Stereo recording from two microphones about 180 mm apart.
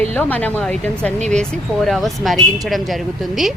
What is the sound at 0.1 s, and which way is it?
Speech, 10° left (ahead or behind).